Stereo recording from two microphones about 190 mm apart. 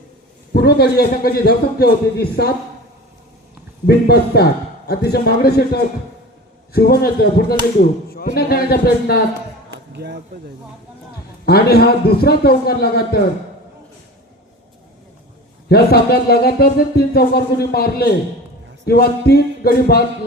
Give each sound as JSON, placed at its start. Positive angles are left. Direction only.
{"t": 0.5, "sound": "speech", "side_deg": 55}
{"t": 3.8, "sound": "speech", "side_deg": 55}
{"t": 9.9, "sound": "speech", "side_deg": -60}
{"t": 11.4, "sound": "speech", "side_deg": 55}
{"t": 15.7, "sound": "speech", "side_deg": 55}